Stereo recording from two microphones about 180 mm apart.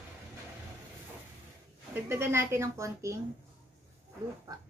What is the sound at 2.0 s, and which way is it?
A woman's voice, 15° right (ahead or behind).